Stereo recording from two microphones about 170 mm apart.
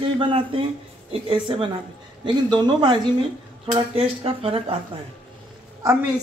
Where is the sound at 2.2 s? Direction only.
25° right (ahead or behind).